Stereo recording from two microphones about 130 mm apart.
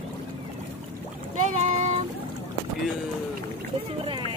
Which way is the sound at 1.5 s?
60° right (ahead or behind).